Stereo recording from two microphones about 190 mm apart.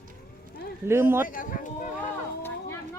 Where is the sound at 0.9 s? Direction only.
10° right (ahead or behind).